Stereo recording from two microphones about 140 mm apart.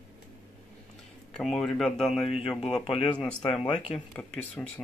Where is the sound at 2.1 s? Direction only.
45° left (ahead or behind).